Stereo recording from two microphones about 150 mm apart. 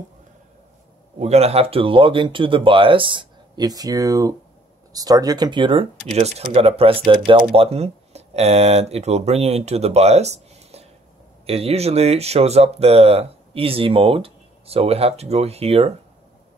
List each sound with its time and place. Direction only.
1.2 s speech: 45° right (ahead or behind)
6.1 s speech: 45° right (ahead or behind)